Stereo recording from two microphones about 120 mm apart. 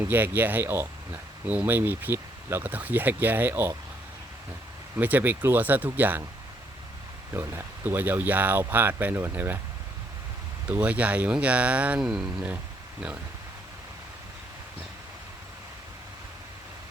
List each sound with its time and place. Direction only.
0.1 s speech: 15° right (ahead or behind)
4.9 s speech: 15° right (ahead or behind)
7.3 s speech: 20° right (ahead or behind)
10.7 s speech: 10° right (ahead or behind)